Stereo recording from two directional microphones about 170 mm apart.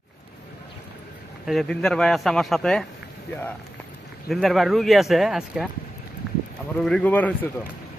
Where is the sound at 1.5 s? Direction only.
Centre (ahead or behind).